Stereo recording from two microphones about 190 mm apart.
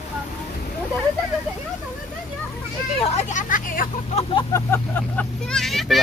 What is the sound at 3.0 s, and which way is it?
Speech, 35° left (ahead or behind).